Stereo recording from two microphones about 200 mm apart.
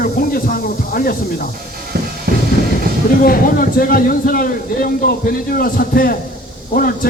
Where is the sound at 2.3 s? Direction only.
50° right (ahead or behind).